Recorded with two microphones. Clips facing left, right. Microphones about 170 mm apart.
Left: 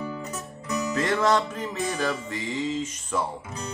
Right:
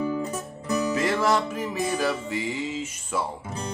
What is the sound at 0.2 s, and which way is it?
Music, 30° right (ahead or behind).